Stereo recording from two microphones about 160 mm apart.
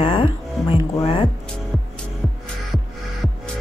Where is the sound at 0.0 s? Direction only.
35° left (ahead or behind).